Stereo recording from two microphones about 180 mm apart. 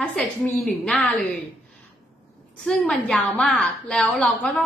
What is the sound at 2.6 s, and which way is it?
A woman's voice, 5° left (ahead or behind).